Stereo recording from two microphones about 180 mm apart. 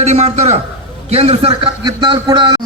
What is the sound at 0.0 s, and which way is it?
A man's voice, 40° right (ahead or behind).